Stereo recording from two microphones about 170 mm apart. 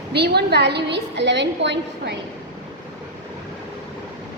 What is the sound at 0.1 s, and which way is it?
A woman's voice, 75° right (ahead or behind).